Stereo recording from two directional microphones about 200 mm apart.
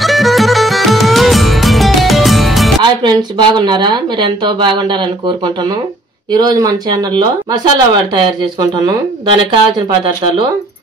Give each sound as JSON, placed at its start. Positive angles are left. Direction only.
{"t": 0.0, "sound": "music", "side_deg": 0}
{"t": 2.8, "sound": "speech", "side_deg": -25}